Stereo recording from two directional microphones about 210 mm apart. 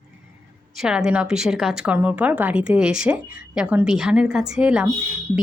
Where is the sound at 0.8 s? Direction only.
5° right (ahead or behind).